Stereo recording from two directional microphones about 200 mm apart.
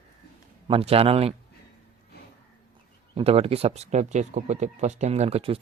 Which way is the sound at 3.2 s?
30° right (ahead or behind).